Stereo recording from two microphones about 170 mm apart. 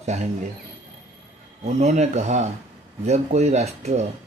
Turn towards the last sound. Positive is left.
turn(degrees=-40)  # may be behind; listen again after turning